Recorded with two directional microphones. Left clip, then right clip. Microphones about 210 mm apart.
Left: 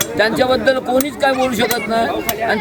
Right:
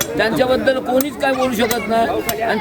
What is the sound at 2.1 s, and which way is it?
Speech, 45° left (ahead or behind).